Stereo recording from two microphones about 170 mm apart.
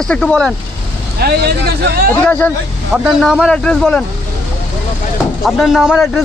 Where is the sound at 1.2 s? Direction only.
70° right (ahead or behind).